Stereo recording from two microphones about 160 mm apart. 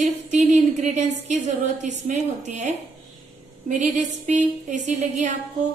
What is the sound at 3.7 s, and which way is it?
A woman's voice, 50° right (ahead or behind).